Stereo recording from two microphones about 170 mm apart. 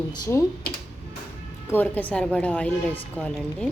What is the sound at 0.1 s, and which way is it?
Speech, 20° left (ahead or behind).